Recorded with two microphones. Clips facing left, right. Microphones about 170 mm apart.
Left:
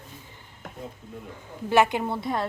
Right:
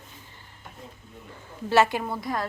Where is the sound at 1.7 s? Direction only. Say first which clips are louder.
Left 1 dB; 20° left (ahead or behind).